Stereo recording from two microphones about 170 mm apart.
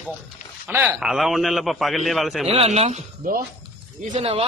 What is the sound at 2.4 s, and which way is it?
Speech, 35° right (ahead or behind).